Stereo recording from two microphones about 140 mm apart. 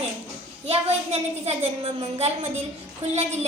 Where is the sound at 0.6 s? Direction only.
45° right (ahead or behind).